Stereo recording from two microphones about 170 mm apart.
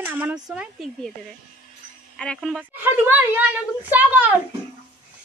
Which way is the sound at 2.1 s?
5° left (ahead or behind).